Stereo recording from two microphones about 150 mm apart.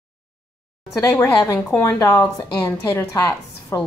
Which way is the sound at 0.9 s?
20° left (ahead or behind).